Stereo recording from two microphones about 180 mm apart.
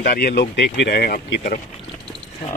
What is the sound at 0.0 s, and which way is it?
Speech, 55° left (ahead or behind).